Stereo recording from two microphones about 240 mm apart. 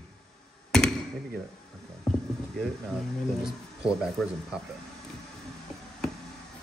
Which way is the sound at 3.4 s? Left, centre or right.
Centre.